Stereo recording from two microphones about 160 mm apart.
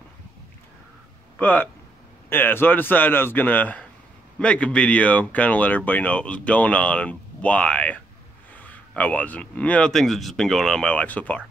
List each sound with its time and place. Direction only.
1.4 s speech: 10° left (ahead or behind)